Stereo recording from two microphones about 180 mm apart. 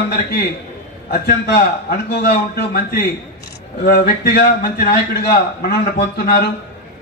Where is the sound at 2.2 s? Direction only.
60° left (ahead or behind).